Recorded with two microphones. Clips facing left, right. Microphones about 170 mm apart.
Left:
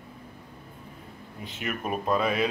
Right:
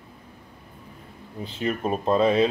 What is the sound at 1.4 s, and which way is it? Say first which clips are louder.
Speech: right 6 dB; 30° right (ahead or behind).